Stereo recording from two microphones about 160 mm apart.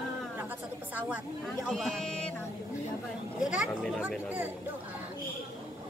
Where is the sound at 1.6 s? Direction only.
Centre (ahead or behind).